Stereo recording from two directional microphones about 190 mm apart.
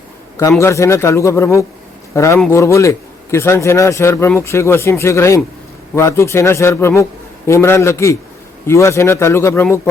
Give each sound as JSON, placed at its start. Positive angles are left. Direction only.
{"t": 0.6, "sound": "a man's voice", "side_deg": 15}